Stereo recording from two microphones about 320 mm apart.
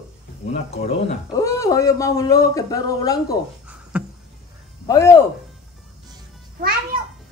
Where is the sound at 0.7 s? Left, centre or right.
Centre.